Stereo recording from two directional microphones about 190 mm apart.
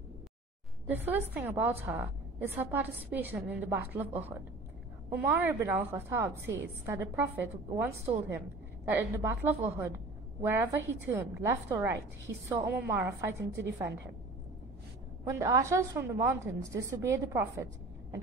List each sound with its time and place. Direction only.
0.8 s a woman's voice: 10° right (ahead or behind)
15.2 s a woman's voice: 15° right (ahead or behind)